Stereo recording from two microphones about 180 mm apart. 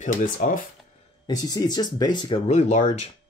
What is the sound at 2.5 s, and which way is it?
Speech, 40° left (ahead or behind).